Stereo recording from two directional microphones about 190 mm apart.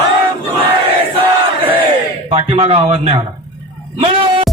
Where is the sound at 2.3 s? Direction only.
30° right (ahead or behind).